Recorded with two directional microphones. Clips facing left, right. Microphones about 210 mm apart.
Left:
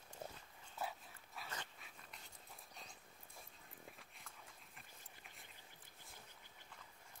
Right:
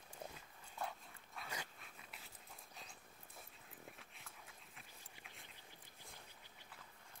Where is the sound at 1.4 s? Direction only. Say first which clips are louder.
Right 2 dB; 10° right (ahead or behind).